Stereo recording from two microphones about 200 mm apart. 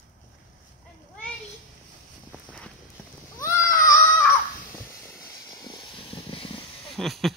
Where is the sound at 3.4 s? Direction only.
15° left (ahead or behind).